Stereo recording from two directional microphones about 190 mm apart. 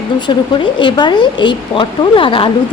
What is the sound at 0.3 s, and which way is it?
Speech, 25° left (ahead or behind).